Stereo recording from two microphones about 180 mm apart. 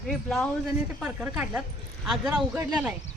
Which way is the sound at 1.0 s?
10° right (ahead or behind).